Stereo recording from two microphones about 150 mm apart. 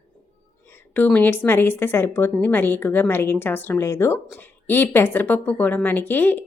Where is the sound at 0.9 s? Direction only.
10° left (ahead or behind).